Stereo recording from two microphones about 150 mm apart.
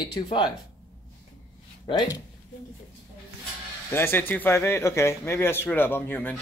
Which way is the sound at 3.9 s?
15° left (ahead or behind).